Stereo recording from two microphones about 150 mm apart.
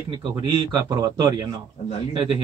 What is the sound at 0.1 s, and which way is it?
Speech, 30° right (ahead or behind).